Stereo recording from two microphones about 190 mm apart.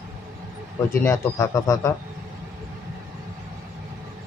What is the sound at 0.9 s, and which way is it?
Speech, 15° left (ahead or behind).